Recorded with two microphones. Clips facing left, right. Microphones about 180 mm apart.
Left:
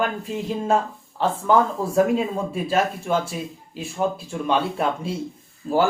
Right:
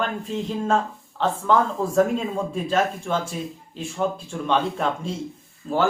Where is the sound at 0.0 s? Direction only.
10° left (ahead or behind).